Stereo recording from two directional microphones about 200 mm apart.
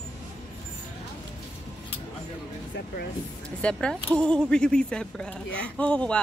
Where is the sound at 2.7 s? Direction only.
50° left (ahead or behind).